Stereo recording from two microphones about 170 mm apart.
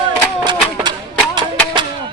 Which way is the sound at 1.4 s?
25° right (ahead or behind).